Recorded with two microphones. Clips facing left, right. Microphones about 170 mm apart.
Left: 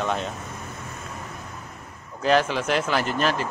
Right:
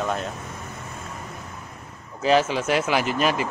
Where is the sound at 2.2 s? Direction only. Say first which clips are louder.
Right 1 dB; 5° right (ahead or behind).